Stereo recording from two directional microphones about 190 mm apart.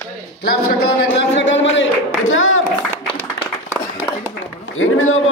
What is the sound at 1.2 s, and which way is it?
Speech, 75° left (ahead or behind).